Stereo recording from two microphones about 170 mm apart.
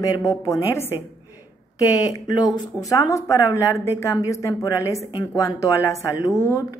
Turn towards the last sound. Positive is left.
turn(degrees=20)  # may be behind; listen again after turning